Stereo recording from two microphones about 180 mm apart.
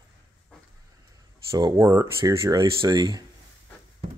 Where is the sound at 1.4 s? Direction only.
20° right (ahead or behind).